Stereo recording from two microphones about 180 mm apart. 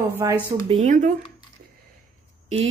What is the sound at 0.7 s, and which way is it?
Speech, 40° right (ahead or behind).